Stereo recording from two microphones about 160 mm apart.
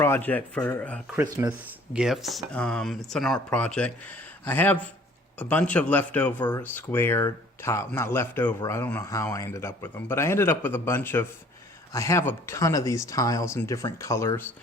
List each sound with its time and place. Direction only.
0.0 s speech: 15° left (ahead or behind)
1.1 s speech: 10° right (ahead or behind); by 14.4 s 20° left (ahead or behind)